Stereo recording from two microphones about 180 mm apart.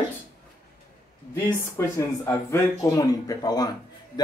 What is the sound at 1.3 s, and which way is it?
Speech, 15° left (ahead or behind).